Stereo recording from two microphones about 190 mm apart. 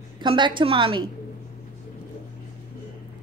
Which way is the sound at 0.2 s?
25° right (ahead or behind).